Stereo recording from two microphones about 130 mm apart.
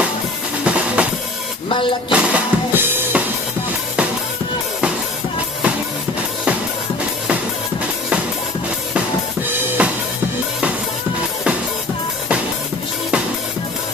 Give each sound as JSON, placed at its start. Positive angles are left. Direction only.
{"t": 0.7, "sound": "drum kit", "side_deg": -10}
{"t": 1.7, "sound": "speech", "side_deg": 40}
{"t": 2.1, "sound": "music", "side_deg": -10}
{"t": 9.8, "sound": "drum", "side_deg": -10}